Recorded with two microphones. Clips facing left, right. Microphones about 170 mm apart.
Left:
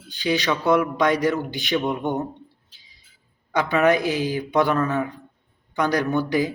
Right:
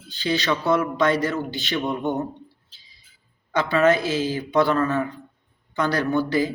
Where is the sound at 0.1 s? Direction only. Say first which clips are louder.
Left 1 dB; 15° left (ahead or behind).